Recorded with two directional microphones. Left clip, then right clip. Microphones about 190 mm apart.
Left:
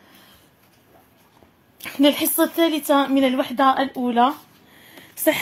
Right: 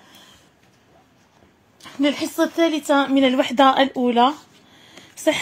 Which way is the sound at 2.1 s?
15° left (ahead or behind).